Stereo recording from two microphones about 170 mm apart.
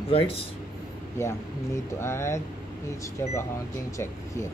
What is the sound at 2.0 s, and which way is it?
Speech, 15° left (ahead or behind).